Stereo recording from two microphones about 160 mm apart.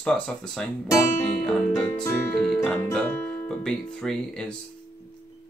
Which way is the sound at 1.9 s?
15° left (ahead or behind).